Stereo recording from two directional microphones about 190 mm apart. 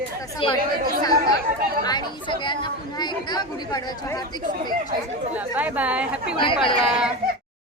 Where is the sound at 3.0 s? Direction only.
20° left (ahead or behind).